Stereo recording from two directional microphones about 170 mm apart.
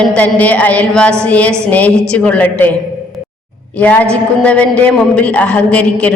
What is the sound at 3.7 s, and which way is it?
A man's voice, 10° left (ahead or behind).